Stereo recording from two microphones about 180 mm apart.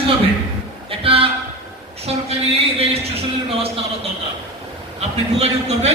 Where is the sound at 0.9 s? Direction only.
30° right (ahead or behind).